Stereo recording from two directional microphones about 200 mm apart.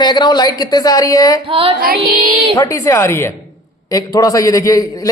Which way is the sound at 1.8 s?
50° right (ahead or behind).